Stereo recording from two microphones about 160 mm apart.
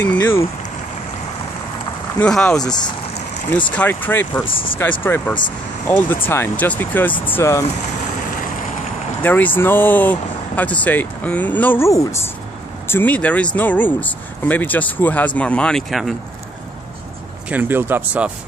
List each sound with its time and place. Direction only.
0.0 s speech: 10° left (ahead or behind)
2.1 s speech: 5° left (ahead or behind)
2.6 s speech: 25° left (ahead or behind)
3.4 s speech: 10° left (ahead or behind)
9.2 s speech: 10° left (ahead or behind)
17.5 s speech: 10° right (ahead or behind)